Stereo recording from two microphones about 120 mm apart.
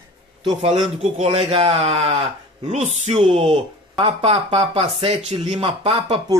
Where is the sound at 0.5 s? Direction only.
50° right (ahead or behind).